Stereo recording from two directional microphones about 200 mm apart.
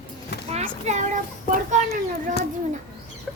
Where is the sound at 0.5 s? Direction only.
35° right (ahead or behind).